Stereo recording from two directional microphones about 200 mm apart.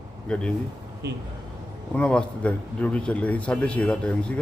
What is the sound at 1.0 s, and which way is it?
Speech, 55° right (ahead or behind).